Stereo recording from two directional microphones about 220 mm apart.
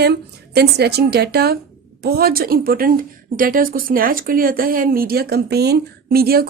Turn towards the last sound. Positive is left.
turn(degrees=-45)  # may be behind; listen again after turning